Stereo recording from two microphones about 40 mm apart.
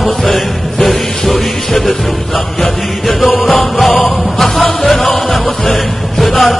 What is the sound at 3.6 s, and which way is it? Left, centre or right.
Music, centre.